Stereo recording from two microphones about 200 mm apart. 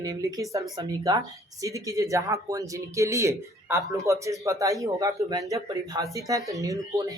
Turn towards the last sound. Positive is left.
turn(degrees=-15)  # may be behind; listen again after turning